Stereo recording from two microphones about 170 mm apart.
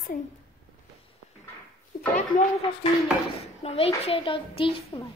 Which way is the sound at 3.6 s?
35° left (ahead or behind).